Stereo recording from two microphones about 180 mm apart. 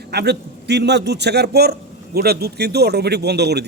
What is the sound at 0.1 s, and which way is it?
A man's voice, 65° right (ahead or behind).